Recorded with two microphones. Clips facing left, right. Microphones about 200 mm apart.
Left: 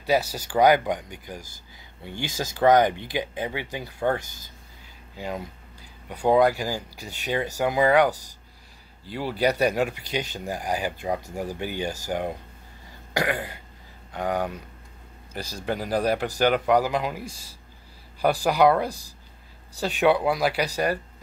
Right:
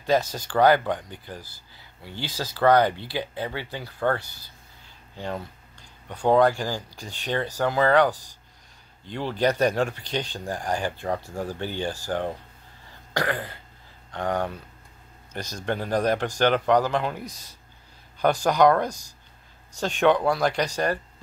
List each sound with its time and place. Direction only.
0.0 s speech: 10° left (ahead or behind)
14.1 s speech: 10° left (ahead or behind)
15.6 s speech: 10° left (ahead or behind)
17.2 s speech: 30° left (ahead or behind)
18.4 s speech: 10° left (ahead or behind)
18.9 s speech: 35° left (ahead or behind)
19.8 s speech: 10° left (ahead or behind)